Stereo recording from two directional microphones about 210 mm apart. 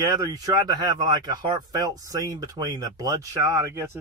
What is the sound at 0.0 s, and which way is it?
Speech, 15° right (ahead or behind).